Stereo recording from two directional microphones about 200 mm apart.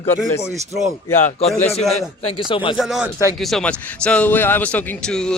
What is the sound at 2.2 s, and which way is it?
Speech, 25° left (ahead or behind).